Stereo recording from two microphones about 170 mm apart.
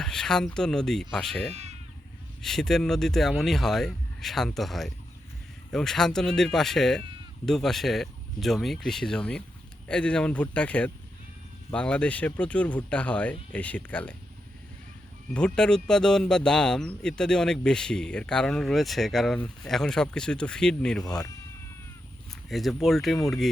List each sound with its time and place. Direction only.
0.0 s speech: 5° left (ahead or behind)
15.3 s speech: 5° left (ahead or behind)
21.0 s speech: 20° left (ahead or behind)
22.4 s speech: centre (ahead or behind)